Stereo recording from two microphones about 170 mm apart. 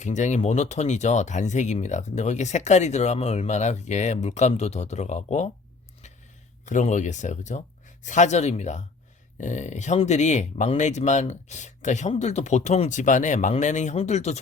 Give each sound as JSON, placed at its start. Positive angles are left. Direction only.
{"t": 0.0, "sound": "speech", "side_deg": 45}
{"t": 6.7, "sound": "speech", "side_deg": 45}